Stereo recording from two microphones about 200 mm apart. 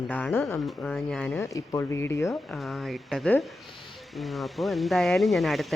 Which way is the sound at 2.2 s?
Centre (ahead or behind).